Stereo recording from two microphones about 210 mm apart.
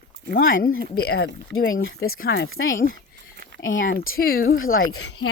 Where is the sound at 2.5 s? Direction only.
70° left (ahead or behind).